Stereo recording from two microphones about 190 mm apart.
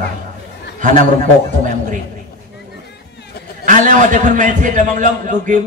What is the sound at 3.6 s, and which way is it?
A man's voice, 45° right (ahead or behind).